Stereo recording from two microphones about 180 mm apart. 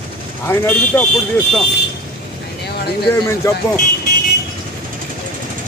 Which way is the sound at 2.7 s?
60° left (ahead or behind).